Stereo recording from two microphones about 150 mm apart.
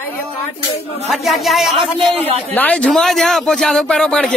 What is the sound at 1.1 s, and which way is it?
Speech, centre (ahead or behind).